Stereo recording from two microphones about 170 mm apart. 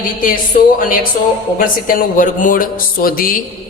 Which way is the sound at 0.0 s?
55° left (ahead or behind).